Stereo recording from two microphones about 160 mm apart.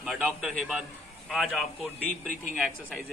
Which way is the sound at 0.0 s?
Centre (ahead or behind).